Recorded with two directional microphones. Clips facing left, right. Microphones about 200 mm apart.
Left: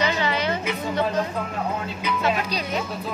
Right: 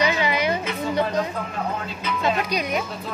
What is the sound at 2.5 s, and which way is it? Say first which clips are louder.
Speech: right 2 dB; 15° right (ahead or behind).